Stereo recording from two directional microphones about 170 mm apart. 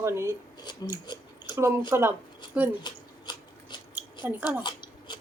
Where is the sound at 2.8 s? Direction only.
25° left (ahead or behind).